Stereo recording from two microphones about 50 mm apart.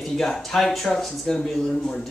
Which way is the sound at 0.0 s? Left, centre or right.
Centre.